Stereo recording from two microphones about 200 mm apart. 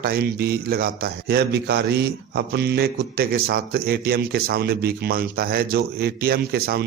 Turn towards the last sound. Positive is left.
turn(degrees=-50)  # may be behind; listen again after turning